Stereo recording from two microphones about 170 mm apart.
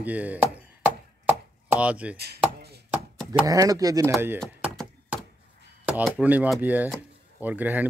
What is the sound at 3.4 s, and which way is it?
Speech, 20° right (ahead or behind).